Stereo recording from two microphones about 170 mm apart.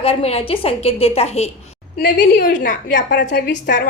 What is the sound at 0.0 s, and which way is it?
A woman's voice, 35° left (ahead or behind).